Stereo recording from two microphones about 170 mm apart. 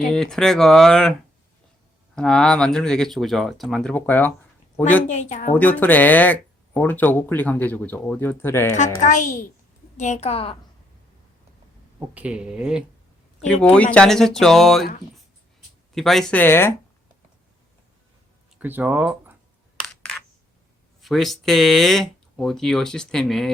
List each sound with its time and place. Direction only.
0.1 s speech: 5° left (ahead or behind)
2.1 s speech: 5° left (ahead or behind)
5.0 s speech: 45° left (ahead or behind)
5.5 s speech: 10° left (ahead or behind)
9.0 s a woman's voice: 45° left (ahead or behind)
11.9 s speech: 10° right (ahead or behind)
13.7 s speech: 5° left (ahead or behind)
16.0 s speech: centre (ahead or behind)
18.6 s speech: 10° right (ahead or behind)
19.9 s coin: 5° left (ahead or behind)
21.0 s speech: centre (ahead or behind)